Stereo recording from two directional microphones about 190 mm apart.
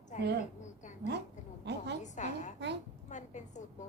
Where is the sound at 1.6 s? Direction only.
65° right (ahead or behind).